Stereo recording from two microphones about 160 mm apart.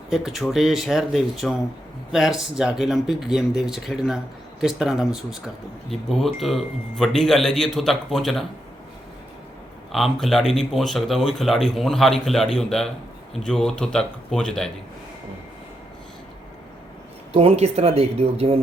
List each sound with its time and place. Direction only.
0.1 s speech: centre (ahead or behind)
9.9 s speech: centre (ahead or behind)
17.3 s speech: 40° right (ahead or behind)